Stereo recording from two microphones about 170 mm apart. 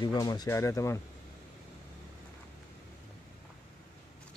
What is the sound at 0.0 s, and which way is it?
Speech, 25° left (ahead or behind).